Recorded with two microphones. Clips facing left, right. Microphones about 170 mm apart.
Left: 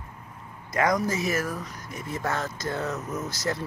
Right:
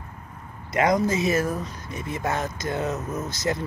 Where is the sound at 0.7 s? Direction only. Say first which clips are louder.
Right 3 dB; 25° right (ahead or behind).